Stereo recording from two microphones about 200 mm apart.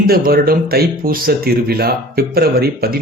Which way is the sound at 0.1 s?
50° right (ahead or behind).